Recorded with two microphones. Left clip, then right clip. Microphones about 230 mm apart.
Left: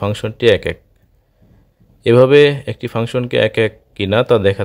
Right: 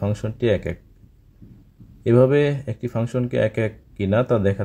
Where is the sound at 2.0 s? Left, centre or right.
Left.